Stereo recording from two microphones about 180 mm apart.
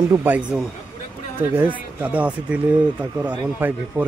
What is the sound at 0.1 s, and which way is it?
Speech, 10° right (ahead or behind).